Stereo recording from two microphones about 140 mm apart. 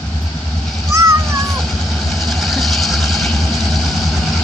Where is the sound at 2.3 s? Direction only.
Centre (ahead or behind).